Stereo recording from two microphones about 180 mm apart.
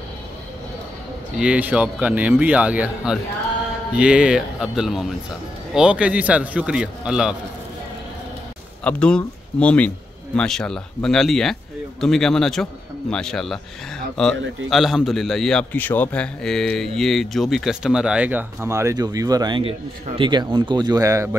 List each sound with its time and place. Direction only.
1.4 s a man's voice: 5° right (ahead or behind)
8.8 s a man's voice: 5° left (ahead or behind); by 21.4 s 15° right (ahead or behind)